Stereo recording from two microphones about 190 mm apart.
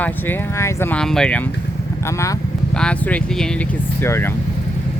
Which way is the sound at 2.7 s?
5° left (ahead or behind).